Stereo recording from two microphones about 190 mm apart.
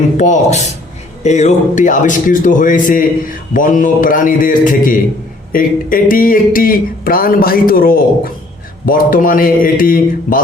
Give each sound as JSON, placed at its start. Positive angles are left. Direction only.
{"t": 0.2, "sound": "speech", "side_deg": 40}